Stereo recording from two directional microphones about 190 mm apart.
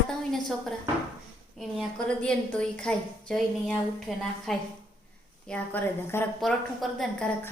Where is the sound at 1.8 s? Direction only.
5° left (ahead or behind).